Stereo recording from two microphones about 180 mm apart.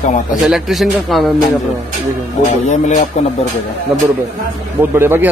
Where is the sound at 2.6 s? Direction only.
40° left (ahead or behind).